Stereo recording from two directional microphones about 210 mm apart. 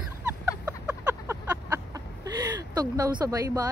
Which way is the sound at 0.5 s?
5° right (ahead or behind).